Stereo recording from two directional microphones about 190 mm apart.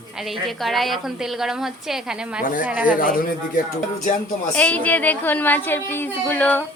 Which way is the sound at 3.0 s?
45° left (ahead or behind).